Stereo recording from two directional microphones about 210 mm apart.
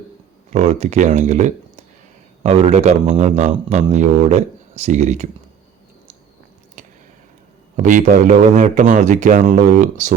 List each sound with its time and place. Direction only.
0.5 s a man's voice: 30° right (ahead or behind)
6.8 s squish: 35° right (ahead or behind)
7.8 s a man's voice: 35° right (ahead or behind)